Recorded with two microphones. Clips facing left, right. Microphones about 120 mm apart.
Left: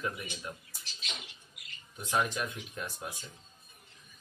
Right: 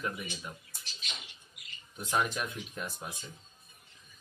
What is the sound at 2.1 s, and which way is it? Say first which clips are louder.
Speech: even; 5° right (ahead or behind).